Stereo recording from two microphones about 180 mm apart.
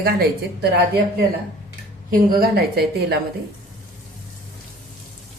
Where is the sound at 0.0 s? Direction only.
55° right (ahead or behind).